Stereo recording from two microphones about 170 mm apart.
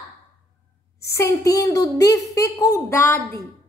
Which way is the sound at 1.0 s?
15° left (ahead or behind).